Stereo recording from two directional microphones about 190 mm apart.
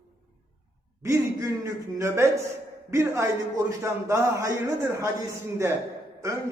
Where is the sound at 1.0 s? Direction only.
15° right (ahead or behind).